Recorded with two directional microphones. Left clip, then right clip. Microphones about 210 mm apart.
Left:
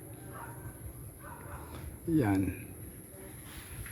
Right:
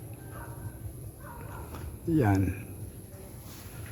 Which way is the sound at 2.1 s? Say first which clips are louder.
Right 2 dB; 5° right (ahead or behind).